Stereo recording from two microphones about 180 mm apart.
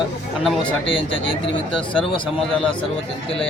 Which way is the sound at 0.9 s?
30° left (ahead or behind).